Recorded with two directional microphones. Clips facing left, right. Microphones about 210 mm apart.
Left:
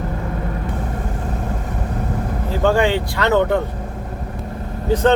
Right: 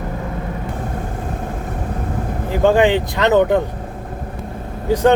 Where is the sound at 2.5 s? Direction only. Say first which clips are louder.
Right 3 dB; 15° right (ahead or behind).